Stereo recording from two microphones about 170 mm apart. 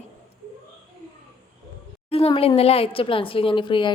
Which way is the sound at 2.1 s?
35° left (ahead or behind).